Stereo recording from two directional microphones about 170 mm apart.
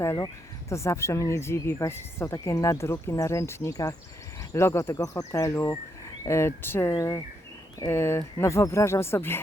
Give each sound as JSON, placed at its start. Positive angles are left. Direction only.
{"t": 0.0, "sound": "speech", "side_deg": 15}